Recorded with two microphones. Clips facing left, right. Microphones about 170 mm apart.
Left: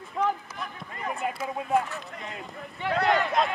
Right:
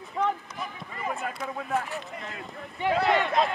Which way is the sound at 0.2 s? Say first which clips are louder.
Even; centre (ahead or behind).